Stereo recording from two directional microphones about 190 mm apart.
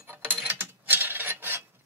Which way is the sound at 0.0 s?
10° right (ahead or behind).